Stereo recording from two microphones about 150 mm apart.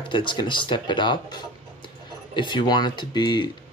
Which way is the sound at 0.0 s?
35° left (ahead or behind).